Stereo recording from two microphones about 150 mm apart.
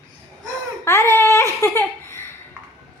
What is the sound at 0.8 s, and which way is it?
Baby cry, 20° left (ahead or behind).